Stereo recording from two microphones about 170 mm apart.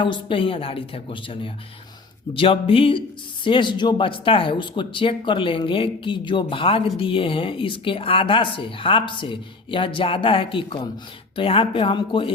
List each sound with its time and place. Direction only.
0.0 s speech: 30° left (ahead or behind)